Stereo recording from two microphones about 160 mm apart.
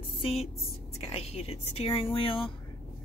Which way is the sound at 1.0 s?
40° left (ahead or behind).